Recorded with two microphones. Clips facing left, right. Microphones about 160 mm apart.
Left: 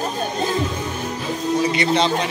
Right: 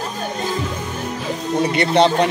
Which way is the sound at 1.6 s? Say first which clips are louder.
Right 5 dB; 60° right (ahead or behind).